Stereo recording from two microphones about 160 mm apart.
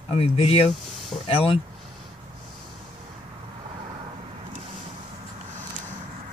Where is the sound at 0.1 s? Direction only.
35° left (ahead or behind).